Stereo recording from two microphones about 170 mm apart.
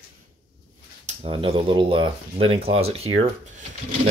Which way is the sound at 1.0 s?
35° right (ahead or behind).